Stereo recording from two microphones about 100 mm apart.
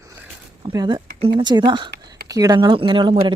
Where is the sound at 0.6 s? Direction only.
50° right (ahead or behind).